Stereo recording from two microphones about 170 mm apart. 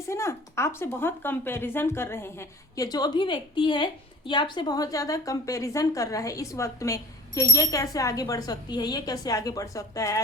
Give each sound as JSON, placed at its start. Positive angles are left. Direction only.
{"t": 0.1, "sound": "a woman's voice", "side_deg": 15}